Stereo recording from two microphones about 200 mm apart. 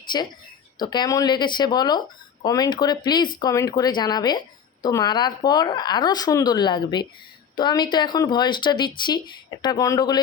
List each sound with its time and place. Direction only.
0.0 s speech: 20° left (ahead or behind)